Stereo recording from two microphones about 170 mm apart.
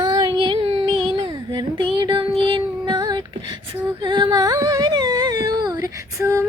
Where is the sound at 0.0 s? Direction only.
25° right (ahead or behind).